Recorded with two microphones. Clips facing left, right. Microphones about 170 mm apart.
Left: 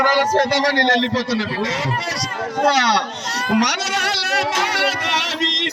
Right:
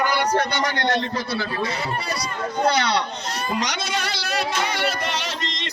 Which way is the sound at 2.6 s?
80° left.